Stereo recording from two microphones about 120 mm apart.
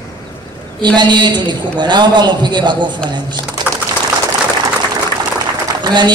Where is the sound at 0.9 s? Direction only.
35° right (ahead or behind).